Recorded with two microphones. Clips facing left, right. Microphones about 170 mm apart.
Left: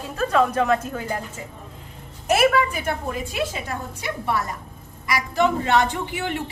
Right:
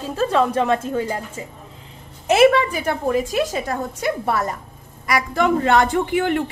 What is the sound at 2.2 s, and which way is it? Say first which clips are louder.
A woman's voice: right 5 dB; 30° right (ahead or behind).